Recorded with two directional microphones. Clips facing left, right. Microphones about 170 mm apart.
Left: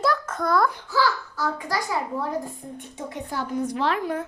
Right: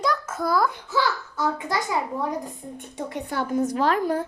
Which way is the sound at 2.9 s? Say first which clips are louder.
Right 3 dB; 65° right (ahead or behind).